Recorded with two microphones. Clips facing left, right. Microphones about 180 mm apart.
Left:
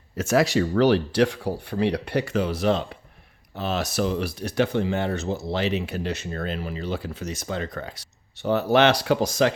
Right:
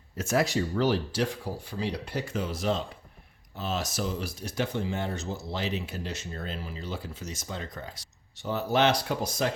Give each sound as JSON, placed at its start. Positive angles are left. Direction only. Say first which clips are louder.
{"t": 0.2, "sound": "speech", "louder": "left 6 dB", "side_deg": 85}